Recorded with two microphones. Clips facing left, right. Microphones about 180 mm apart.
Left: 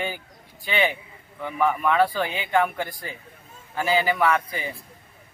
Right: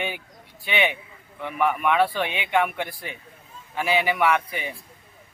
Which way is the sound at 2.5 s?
Centre (ahead or behind).